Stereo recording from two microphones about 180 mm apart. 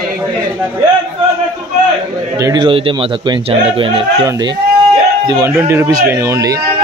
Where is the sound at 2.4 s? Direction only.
20° right (ahead or behind).